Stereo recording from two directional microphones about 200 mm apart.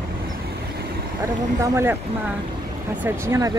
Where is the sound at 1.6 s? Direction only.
10° right (ahead or behind).